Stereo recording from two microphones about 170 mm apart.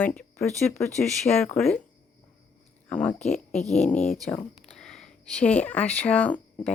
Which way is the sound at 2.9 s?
5° left (ahead or behind).